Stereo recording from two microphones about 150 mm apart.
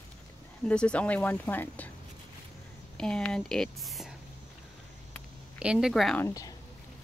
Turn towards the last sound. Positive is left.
turn(degrees=20)  # may be behind; listen again after turning